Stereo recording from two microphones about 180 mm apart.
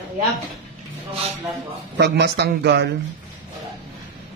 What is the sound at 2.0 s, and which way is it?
Speech, 70° right (ahead or behind).